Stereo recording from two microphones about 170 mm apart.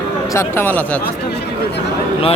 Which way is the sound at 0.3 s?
10° left (ahead or behind).